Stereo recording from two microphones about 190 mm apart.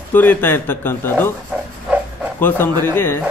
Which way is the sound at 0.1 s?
10° left (ahead or behind).